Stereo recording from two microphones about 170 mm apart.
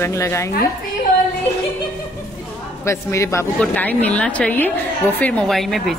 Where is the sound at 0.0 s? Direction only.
15° left (ahead or behind).